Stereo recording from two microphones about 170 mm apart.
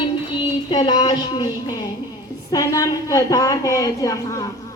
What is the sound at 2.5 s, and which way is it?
A woman's voice, 20° left (ahead or behind).